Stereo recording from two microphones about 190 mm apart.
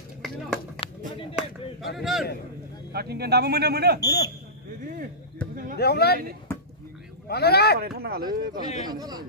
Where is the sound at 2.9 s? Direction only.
55° right (ahead or behind).